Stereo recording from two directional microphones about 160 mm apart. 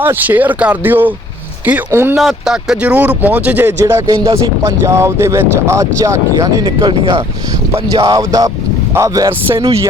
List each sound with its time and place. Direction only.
0.0 s speech: 10° right (ahead or behind)
2.1 s speech: centre (ahead or behind); by 6.7 s 20° right (ahead or behind)
6.7 s speech: 30° right (ahead or behind)